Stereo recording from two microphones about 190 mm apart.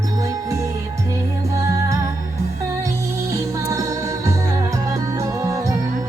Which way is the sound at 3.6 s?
15° right (ahead or behind).